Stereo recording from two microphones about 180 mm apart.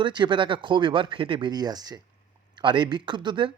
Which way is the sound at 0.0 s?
25° right (ahead or behind).